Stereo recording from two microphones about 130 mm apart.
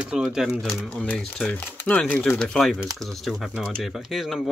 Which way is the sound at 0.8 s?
10° left (ahead or behind).